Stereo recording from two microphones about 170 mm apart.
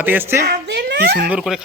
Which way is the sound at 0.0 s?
10° right (ahead or behind).